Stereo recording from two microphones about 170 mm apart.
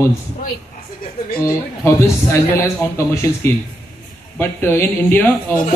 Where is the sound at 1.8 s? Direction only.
15° left (ahead or behind).